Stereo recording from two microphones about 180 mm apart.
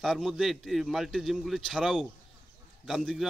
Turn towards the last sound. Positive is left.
turn(degrees=0)  # may be behind; listen again after turning